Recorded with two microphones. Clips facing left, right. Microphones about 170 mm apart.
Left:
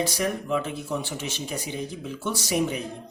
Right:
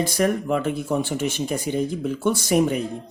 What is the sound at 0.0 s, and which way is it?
Speech, 50° right (ahead or behind).